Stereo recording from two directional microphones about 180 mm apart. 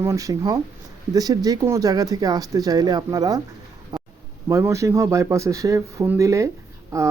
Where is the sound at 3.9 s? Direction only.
20° right (ahead or behind).